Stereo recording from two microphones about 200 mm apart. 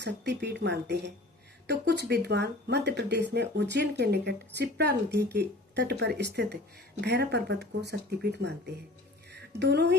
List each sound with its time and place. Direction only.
0.0 s speech: 60° right (ahead or behind)